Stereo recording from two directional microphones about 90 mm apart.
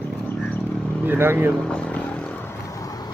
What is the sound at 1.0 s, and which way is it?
Speech, 25° right (ahead or behind).